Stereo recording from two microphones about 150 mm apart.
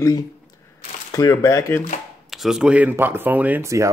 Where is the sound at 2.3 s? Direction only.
Centre (ahead or behind); by 3.9 s 20° right (ahead or behind).